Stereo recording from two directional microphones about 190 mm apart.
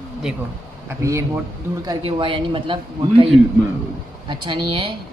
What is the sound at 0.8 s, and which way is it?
Speech, 15° right (ahead or behind).